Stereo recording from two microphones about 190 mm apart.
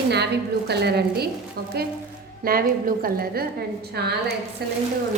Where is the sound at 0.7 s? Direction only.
60° right (ahead or behind).